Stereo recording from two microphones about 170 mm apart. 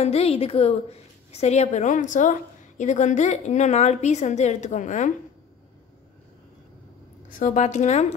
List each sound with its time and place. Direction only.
0.0 s a woman's voice: 40° left (ahead or behind)
7.2 s a woman's voice: 50° left (ahead or behind)